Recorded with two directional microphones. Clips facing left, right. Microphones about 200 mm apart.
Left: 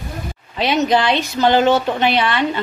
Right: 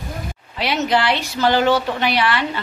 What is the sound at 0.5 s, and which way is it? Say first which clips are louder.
A woman's voice: left 3 dB; 20° left (ahead or behind).